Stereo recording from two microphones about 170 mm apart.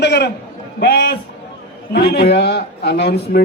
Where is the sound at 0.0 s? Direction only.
80° left.